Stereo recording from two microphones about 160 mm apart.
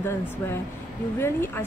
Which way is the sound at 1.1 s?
15° left (ahead or behind).